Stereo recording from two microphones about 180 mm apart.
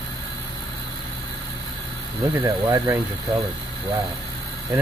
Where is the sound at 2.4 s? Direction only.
15° right (ahead or behind).